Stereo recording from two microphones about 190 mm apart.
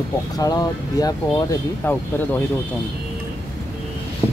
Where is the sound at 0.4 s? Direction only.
20° left (ahead or behind).